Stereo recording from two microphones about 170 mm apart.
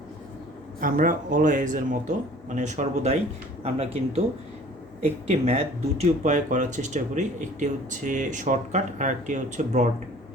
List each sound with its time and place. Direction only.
0.8 s speech: 55° right (ahead or behind)